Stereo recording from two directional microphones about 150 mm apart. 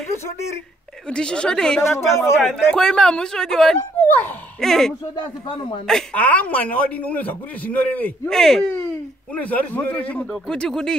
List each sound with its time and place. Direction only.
1.1 s speech: 5° left (ahead or behind)
1.8 s speech: 20° left (ahead or behind)
2.4 s speech: 5° left (ahead or behind)
5.5 s a man's voice: 35° left (ahead or behind)
5.9 s a man's voice: 5° left (ahead or behind)